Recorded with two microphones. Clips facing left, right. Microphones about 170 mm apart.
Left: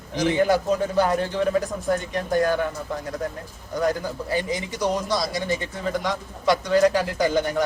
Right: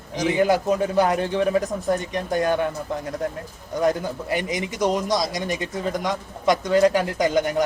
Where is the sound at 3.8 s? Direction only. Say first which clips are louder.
Right 2 dB; 20° right (ahead or behind).